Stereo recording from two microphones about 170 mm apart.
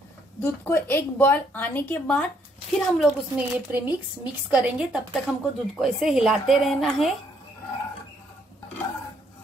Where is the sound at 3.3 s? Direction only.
10° right (ahead or behind).